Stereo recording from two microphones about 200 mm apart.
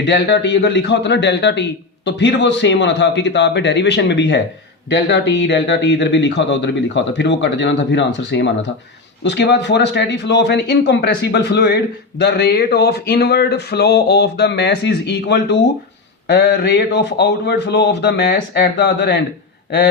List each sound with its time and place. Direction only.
0.0 s a man's voice: 60° left (ahead or behind)